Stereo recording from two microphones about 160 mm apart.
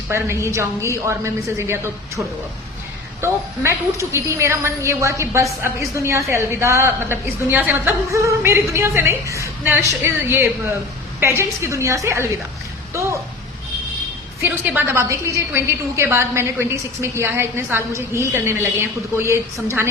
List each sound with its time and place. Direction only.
0.1 s a woman's voice: 15° right (ahead or behind)
14.7 s a woman's voice: 15° right (ahead or behind)